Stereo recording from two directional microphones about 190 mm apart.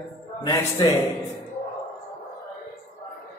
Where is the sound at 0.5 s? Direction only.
20° left (ahead or behind).